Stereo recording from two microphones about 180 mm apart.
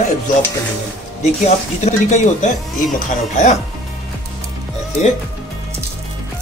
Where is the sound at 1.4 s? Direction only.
40° left (ahead or behind).